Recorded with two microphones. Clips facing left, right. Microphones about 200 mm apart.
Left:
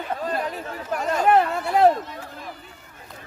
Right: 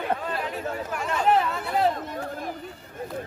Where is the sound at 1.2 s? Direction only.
55° left (ahead or behind).